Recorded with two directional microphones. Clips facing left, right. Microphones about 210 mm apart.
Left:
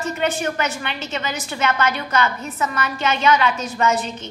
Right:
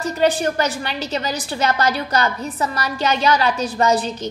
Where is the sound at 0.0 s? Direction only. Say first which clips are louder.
Right 4 dB; 35° right (ahead or behind).